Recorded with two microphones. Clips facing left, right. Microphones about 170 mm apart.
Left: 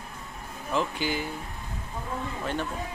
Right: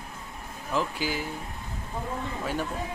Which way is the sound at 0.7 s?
Centre (ahead or behind).